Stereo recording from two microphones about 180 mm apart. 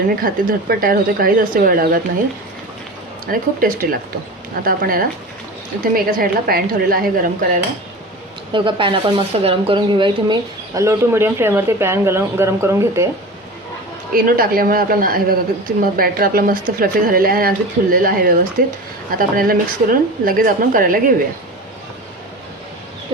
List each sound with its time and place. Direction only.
0.2 s speech: 55° right (ahead or behind)
3.2 s a woman's voice: 55° right (ahead or behind)
8.5 s speech: 25° right (ahead or behind)
14.1 s speech: 55° right (ahead or behind)